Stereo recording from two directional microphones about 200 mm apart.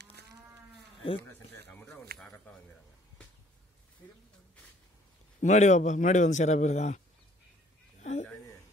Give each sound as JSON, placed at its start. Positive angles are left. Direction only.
{"t": 1.7, "sound": "speech", "side_deg": 10}
{"t": 5.4, "sound": "a man's voice", "side_deg": 35}
{"t": 8.0, "sound": "a sound", "side_deg": 35}